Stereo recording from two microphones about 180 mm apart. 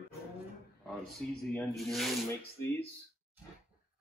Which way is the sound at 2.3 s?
15° left (ahead or behind).